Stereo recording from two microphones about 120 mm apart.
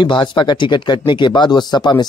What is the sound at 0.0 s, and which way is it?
Speech, 40° left (ahead or behind).